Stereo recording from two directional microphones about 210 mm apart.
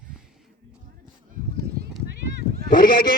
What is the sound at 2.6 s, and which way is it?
Speech, 40° left (ahead or behind).